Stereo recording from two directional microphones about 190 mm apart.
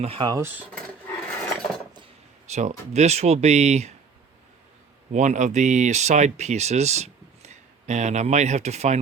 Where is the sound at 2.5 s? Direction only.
35° right (ahead or behind).